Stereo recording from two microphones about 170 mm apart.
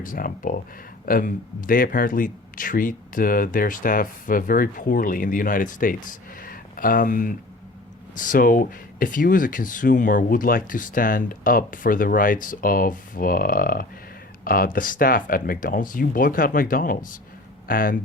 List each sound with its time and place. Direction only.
0.0 s speech: 55° left (ahead or behind)